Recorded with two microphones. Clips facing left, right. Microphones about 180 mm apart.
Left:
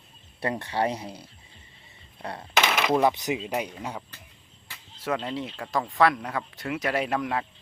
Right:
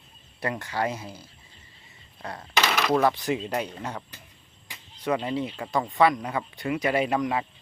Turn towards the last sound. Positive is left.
turn(degrees=0)  # may be behind; listen again after turning